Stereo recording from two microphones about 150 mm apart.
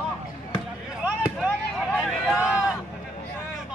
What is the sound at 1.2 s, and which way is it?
Basketball bounce, 5° right (ahead or behind).